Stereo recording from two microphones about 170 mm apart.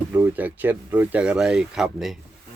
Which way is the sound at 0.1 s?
10° right (ahead or behind).